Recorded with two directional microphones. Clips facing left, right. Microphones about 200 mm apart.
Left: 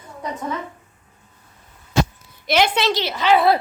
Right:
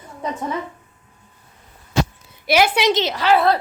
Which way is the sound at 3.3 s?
5° left (ahead or behind).